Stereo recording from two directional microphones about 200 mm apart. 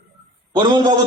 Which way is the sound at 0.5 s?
20° right (ahead or behind).